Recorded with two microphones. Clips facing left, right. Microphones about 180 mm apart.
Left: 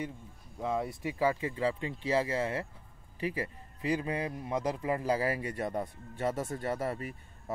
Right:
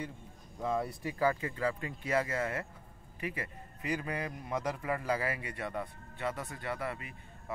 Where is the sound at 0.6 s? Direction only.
15° left (ahead or behind).